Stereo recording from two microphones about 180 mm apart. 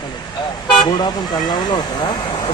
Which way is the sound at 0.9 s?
25° left (ahead or behind).